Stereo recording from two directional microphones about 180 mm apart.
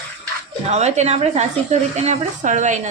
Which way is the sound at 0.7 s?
40° right (ahead or behind).